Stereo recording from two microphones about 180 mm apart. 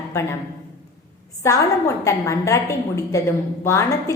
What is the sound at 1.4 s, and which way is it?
A woman's voice, 15° left (ahead or behind).